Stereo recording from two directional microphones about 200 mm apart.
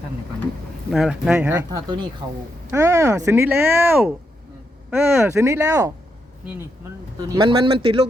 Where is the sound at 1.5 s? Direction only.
20° right (ahead or behind).